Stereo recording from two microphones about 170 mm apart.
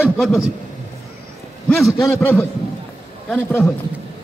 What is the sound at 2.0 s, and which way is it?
A man's voice, 15° left (ahead or behind).